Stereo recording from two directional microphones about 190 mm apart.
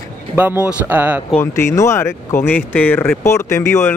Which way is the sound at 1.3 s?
10° left (ahead or behind).